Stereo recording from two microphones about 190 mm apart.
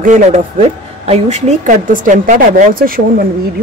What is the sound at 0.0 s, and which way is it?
A man's voice, 40° right (ahead or behind).